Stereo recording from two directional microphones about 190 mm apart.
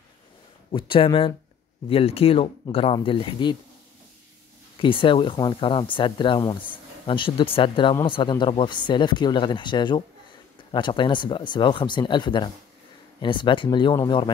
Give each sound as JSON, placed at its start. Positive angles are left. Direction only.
{"t": 0.7, "sound": "speech", "side_deg": 25}
{"t": 4.7, "sound": "speech", "side_deg": 25}